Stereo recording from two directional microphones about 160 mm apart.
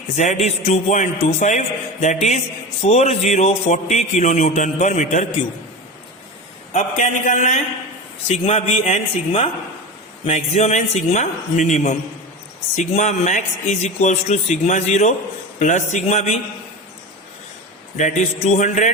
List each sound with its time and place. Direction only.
0.2 s a man's voice: 45° left (ahead or behind)
6.7 s a man's voice: 50° left (ahead or behind)
17.9 s a man's voice: 50° left (ahead or behind)